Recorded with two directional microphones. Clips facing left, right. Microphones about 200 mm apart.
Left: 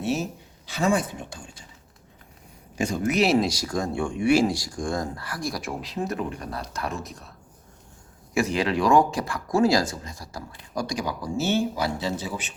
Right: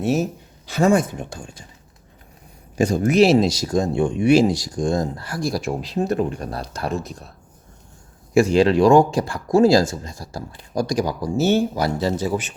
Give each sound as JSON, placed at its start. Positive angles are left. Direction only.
{"t": 0.0, "sound": "speech", "side_deg": -45}
{"t": 2.7, "sound": "speech", "side_deg": -40}